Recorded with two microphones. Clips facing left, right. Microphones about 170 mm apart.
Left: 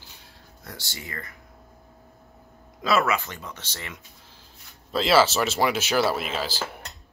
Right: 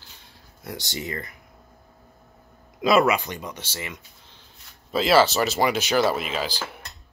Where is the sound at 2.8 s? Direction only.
15° right (ahead or behind).